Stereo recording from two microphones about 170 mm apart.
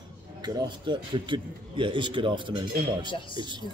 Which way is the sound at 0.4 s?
25° right (ahead or behind).